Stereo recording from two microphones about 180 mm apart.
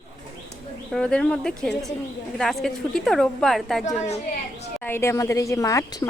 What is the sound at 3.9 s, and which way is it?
Speech, 40° left (ahead or behind).